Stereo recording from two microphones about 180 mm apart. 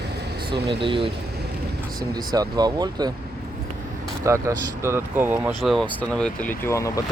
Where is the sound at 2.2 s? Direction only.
20° right (ahead or behind).